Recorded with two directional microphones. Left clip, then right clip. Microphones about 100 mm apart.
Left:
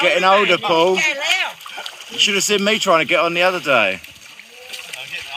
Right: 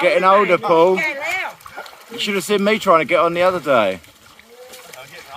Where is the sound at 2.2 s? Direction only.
25° right (ahead or behind).